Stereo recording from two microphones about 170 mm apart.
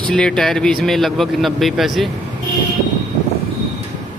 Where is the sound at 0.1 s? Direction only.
5° left (ahead or behind).